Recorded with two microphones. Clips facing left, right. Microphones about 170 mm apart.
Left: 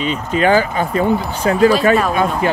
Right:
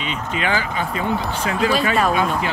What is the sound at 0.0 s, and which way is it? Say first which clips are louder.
Speech: left 8 dB; 40° left (ahead or behind).